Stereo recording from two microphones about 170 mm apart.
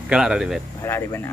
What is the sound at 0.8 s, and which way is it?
Speech, 15° left (ahead or behind).